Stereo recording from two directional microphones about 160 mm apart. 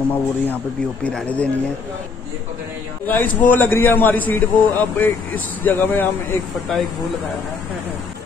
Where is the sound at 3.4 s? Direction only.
10° left (ahead or behind).